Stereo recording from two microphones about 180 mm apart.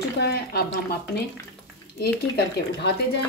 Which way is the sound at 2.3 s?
65° left (ahead or behind).